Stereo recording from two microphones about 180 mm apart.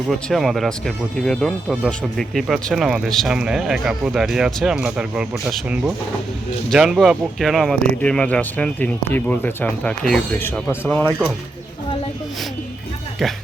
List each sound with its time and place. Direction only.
0.1 s speech: centre (ahead or behind)